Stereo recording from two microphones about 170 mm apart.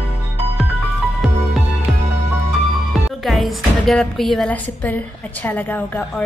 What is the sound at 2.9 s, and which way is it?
Speech, centre (ahead or behind).